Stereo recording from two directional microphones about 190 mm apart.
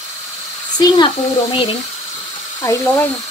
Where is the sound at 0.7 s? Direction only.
20° left (ahead or behind).